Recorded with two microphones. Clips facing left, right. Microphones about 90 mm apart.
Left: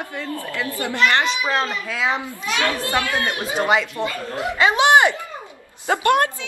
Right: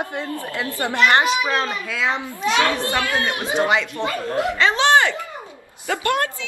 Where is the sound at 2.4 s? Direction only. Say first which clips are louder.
Right 5 dB; 30° right (ahead or behind).